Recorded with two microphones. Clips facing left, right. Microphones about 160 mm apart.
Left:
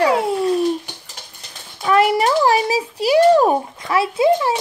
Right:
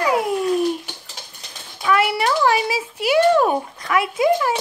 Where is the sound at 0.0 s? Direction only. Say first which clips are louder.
Left 3 dB; 30° left (ahead or behind).